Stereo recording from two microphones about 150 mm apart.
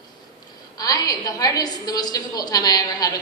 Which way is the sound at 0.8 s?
25° left (ahead or behind).